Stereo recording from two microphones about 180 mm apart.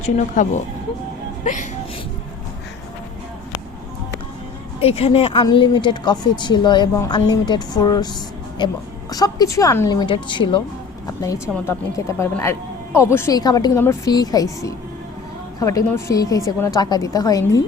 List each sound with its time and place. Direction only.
0.0 s speech: 40° left (ahead or behind)
4.8 s speech: 35° left (ahead or behind)
11.0 s a sound: 20° left (ahead or behind)
11.5 s speech: 15° left (ahead or behind)